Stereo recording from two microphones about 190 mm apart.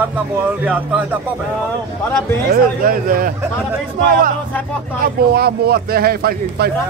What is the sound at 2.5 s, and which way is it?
Speech, 50° right (ahead or behind).